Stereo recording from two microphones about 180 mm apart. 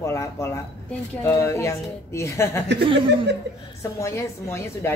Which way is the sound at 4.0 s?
15° left (ahead or behind).